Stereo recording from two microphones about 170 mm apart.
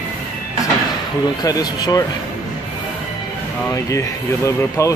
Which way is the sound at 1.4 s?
20° left (ahead or behind).